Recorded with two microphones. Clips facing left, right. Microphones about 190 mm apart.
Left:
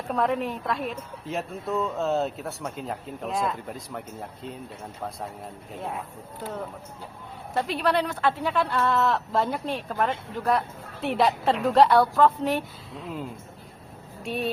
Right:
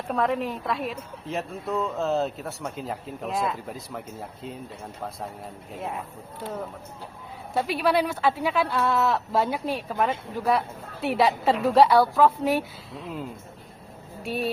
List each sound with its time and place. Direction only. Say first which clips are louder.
0.1 s speech: even; centre (ahead or behind)
5.7 s speech: right 1 dB; centre (ahead or behind)
7.5 s speech: right 1 dB; 5° right (ahead or behind)